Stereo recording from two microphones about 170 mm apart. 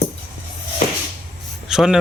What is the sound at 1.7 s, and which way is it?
Speech, 5° right (ahead or behind).